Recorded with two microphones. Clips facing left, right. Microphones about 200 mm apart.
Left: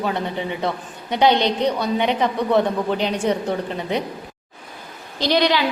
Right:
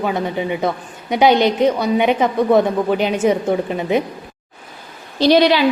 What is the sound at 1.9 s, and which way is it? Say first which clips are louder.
A woman's voice: right 5 dB; 15° right (ahead or behind).